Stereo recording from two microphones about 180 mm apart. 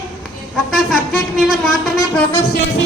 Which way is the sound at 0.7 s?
Centre (ahead or behind).